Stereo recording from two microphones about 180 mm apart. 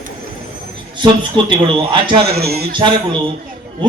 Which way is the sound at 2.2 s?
60° right (ahead or behind).